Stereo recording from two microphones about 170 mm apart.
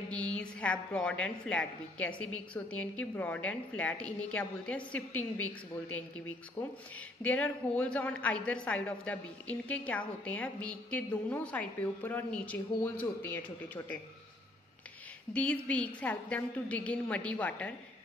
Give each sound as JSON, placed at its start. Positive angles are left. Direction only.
{"t": 0.1, "sound": "a woman's voice", "side_deg": 5}
{"t": 6.6, "sound": "speech", "side_deg": 30}
{"t": 7.2, "sound": "a woman's voice", "side_deg": 10}
{"t": 15.3, "sound": "a woman's voice", "side_deg": 5}